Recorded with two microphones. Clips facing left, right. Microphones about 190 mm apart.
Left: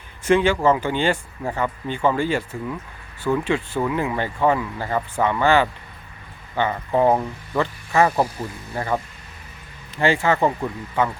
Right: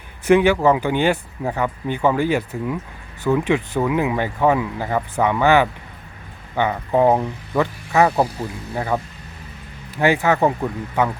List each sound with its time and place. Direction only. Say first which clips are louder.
0.3 s speech: right 3 dB; 15° right (ahead or behind)
10.0 s speech: right 2 dB; 15° right (ahead or behind)
10.3 s speech: right 2 dB; 5° right (ahead or behind)